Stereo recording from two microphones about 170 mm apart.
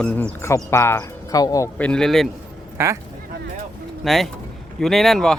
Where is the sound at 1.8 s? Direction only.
5° left (ahead or behind).